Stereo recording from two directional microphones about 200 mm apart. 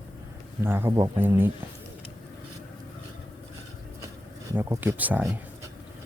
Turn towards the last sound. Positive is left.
turn(degrees=-10)  # may be behind; listen again after turning